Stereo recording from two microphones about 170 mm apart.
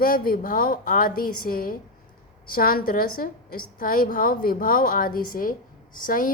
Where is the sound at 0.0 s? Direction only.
55° left (ahead or behind).